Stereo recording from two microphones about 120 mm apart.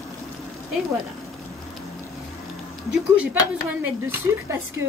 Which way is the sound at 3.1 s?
15° right (ahead or behind).